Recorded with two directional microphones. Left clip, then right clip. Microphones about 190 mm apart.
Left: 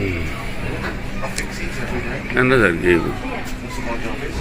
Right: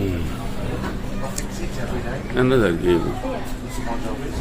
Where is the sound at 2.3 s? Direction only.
Centre (ahead or behind).